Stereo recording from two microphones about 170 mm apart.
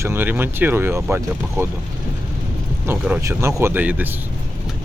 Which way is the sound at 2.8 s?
10° right (ahead or behind).